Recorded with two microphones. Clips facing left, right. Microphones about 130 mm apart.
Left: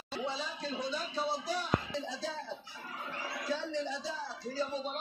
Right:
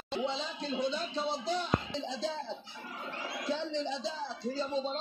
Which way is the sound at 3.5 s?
25° right (ahead or behind).